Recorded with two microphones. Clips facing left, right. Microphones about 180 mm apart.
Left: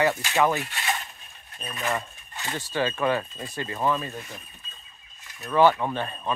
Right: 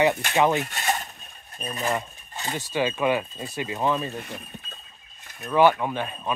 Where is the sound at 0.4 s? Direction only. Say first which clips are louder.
Right 2 dB; 20° right (ahead or behind).